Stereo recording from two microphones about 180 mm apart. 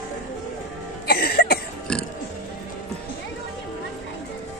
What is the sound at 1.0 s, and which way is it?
Cough, 55° left (ahead or behind).